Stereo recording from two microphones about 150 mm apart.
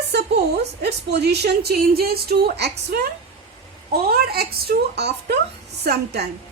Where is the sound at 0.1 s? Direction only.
90° right.